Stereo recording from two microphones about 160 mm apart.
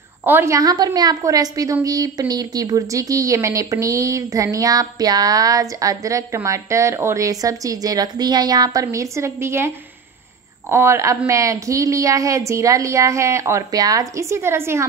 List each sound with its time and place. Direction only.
0.2 s a woman's voice: 15° right (ahead or behind)
10.7 s a woman's voice: 15° right (ahead or behind)